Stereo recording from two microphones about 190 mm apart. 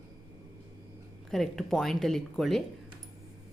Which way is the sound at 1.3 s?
Centre (ahead or behind).